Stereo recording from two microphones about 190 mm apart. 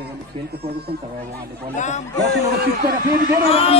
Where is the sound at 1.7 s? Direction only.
40° left (ahead or behind).